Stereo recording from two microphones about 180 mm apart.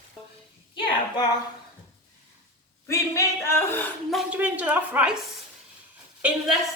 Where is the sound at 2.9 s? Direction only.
15° left (ahead or behind).